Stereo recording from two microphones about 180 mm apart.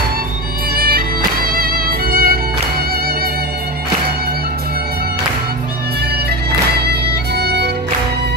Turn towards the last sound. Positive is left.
turn(degrees=-60)  # may be behind; listen again after turning